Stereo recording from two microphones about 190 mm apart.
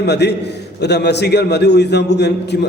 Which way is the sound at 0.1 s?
60° left (ahead or behind).